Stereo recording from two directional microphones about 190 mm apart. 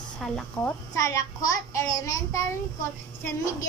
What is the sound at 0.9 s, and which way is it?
Child singing, 15° left (ahead or behind).